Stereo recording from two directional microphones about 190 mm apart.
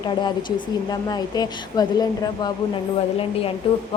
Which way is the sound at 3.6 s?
30° left (ahead or behind).